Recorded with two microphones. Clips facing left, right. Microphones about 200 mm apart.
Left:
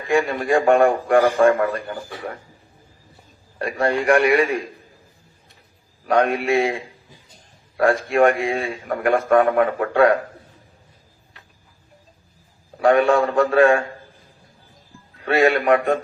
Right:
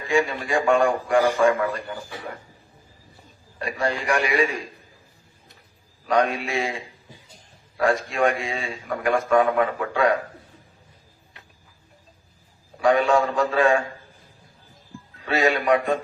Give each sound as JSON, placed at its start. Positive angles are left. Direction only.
{"t": 0.1, "sound": "a man's voice", "side_deg": 55}
{"t": 3.6, "sound": "a man's voice", "side_deg": 60}
{"t": 6.1, "sound": "a man's voice", "side_deg": 55}
{"t": 12.8, "sound": "a man's voice", "side_deg": 60}
{"t": 15.2, "sound": "a man's voice", "side_deg": 55}